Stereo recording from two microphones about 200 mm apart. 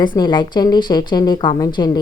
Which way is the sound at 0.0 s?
20° left (ahead or behind).